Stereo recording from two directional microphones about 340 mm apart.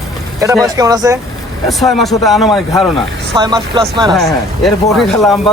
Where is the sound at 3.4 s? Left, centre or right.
Centre.